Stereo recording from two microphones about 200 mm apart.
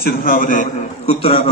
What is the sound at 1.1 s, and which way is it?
Speech, 25° left (ahead or behind).